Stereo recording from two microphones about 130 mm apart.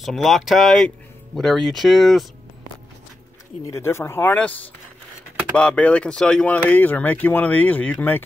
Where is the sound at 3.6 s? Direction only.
20° left (ahead or behind).